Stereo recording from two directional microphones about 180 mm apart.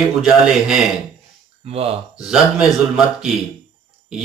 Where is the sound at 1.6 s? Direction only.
35° right (ahead or behind).